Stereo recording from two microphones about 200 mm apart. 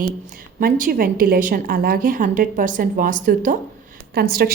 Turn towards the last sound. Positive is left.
turn(degrees=-50)  # may be behind; listen again after turning